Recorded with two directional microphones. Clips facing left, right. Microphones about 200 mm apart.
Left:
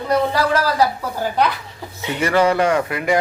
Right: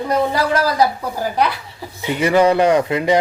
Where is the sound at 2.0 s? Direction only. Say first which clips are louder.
Right 3 dB; 15° right (ahead or behind).